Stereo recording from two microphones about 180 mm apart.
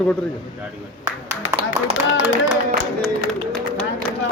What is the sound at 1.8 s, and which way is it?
Speech, 15° right (ahead or behind).